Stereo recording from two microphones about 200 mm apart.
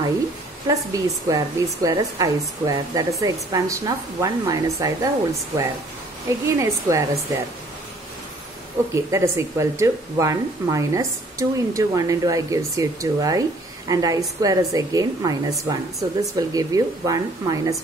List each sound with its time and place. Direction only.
0.7 s speech: 15° right (ahead or behind)
6.4 s speech: 15° right (ahead or behind)
8.9 s speech: 15° right (ahead or behind)